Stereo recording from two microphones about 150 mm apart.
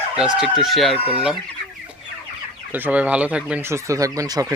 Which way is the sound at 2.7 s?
10° right (ahead or behind).